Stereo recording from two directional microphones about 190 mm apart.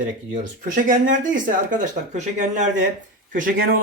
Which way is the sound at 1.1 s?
45° right (ahead or behind).